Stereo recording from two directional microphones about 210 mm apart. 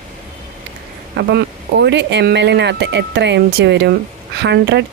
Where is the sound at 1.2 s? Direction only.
55° right (ahead or behind).